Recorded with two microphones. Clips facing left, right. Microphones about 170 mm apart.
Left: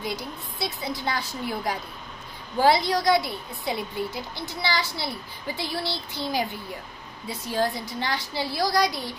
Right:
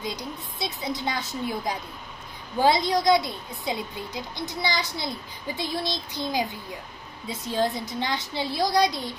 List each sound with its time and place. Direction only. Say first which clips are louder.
0.0 s a woman's voice: left 1 dB; 20° right (ahead or behind)